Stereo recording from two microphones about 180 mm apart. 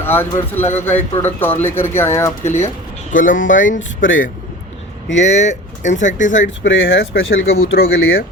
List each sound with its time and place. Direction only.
0.0 s speech: 10° left (ahead or behind)
0.6 s a man's voice: 40° left (ahead or behind)
1.2 s speech: 10° left (ahead or behind)
2.4 s a man's voice: 40° left (ahead or behind)
4.0 s speech: 90° left
5.1 s speech: 40° left (ahead or behind)
6.4 s speech: 90° left; by 8.2 s 60° left (ahead or behind)